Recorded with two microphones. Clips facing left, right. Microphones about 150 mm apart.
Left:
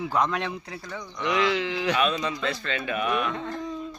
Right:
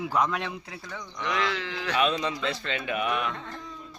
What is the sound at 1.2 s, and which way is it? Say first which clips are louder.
Speech: left 5 dB; 15° left (ahead or behind).